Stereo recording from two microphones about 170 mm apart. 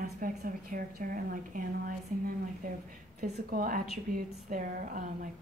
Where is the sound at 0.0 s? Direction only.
60° right (ahead or behind).